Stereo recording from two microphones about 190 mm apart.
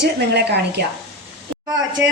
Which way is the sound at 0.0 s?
60° right (ahead or behind).